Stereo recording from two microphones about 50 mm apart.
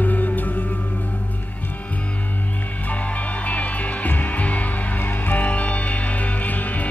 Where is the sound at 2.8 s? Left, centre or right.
Left.